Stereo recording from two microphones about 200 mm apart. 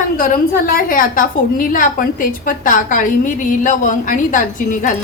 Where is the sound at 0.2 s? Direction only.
45° left (ahead or behind).